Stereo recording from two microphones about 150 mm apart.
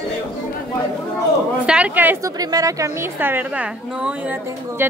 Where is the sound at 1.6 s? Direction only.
10° right (ahead or behind).